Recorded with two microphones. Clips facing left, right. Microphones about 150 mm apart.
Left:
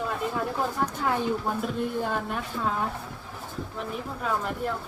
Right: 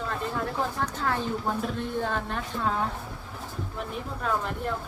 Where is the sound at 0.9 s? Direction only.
10° left (ahead or behind).